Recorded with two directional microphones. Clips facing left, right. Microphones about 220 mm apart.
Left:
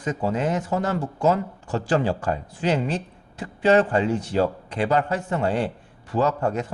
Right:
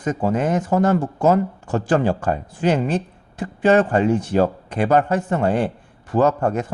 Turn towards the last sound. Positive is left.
turn(degrees=-50)  # may be behind; listen again after turning